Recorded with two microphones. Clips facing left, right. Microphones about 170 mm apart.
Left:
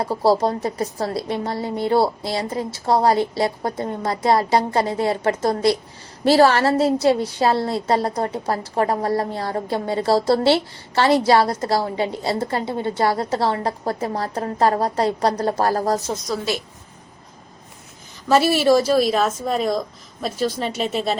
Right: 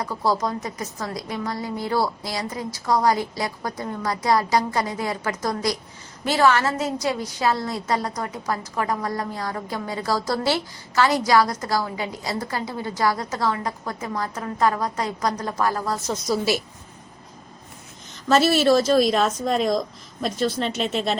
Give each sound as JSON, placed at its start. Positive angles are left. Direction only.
{"t": 0.0, "sound": "a woman's voice", "side_deg": 30}
{"t": 16.2, "sound": "a woman's voice", "side_deg": -5}
{"t": 18.3, "sound": "a woman's voice", "side_deg": 10}